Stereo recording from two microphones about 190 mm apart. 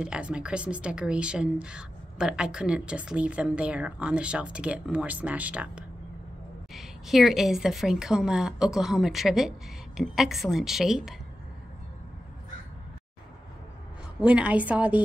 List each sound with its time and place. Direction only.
0.0 s speech: 5° right (ahead or behind)
14.2 s a woman's voice: 5° right (ahead or behind)